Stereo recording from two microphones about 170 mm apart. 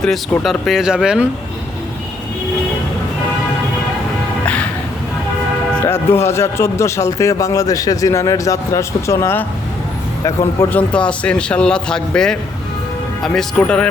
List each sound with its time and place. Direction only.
0.0 s a man's voice: centre (ahead or behind)
5.8 s speech: 15° left (ahead or behind)
10.7 s a man's voice: 5° left (ahead or behind)